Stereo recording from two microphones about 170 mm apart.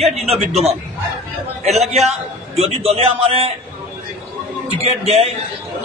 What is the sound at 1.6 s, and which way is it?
A man's voice, 40° right (ahead or behind).